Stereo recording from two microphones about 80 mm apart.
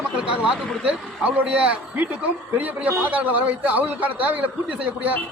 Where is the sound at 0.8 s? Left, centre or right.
Centre.